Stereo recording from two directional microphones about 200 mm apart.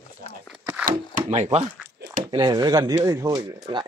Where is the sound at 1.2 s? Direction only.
30° right (ahead or behind).